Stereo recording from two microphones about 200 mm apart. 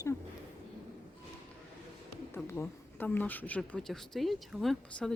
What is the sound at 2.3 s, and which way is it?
Speech, 10° left (ahead or behind).